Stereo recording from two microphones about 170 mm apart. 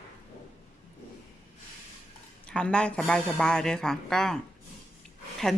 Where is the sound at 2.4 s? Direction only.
5° left (ahead or behind).